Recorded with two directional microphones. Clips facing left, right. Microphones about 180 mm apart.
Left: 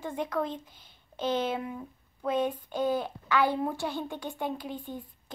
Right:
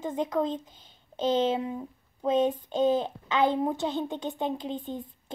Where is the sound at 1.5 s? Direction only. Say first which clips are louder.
Right 4 dB; 20° right (ahead or behind).